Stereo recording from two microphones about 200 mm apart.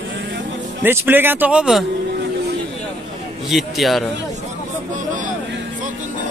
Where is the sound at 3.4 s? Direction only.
Centre (ahead or behind).